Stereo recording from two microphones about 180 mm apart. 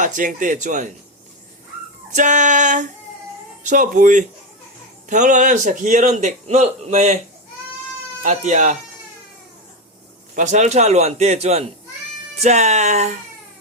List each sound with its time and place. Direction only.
0.0 s a man's voice: 45° right (ahead or behind)
2.1 s a man's voice: 45° right (ahead or behind)
8.2 s a man's voice: 40° right (ahead or behind)
10.3 s a man's voice: 40° right (ahead or behind)